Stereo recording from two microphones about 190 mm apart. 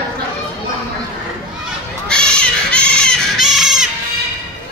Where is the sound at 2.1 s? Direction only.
5° left (ahead or behind).